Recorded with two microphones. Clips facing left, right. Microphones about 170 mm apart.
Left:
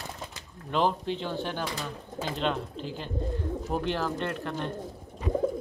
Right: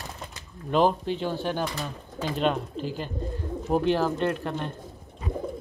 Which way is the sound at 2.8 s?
20° left (ahead or behind).